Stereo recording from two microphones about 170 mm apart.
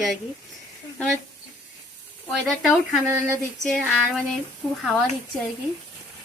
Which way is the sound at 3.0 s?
15° right (ahead or behind).